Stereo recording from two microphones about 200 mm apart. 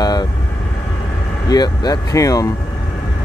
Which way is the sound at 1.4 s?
20° left (ahead or behind).